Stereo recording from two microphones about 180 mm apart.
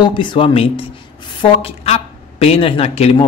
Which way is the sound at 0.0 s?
25° left (ahead or behind).